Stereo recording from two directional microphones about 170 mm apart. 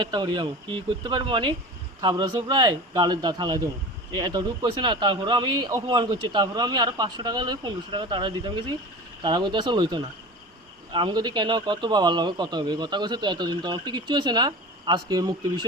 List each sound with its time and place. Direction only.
0.0 s speech: 25° right (ahead or behind)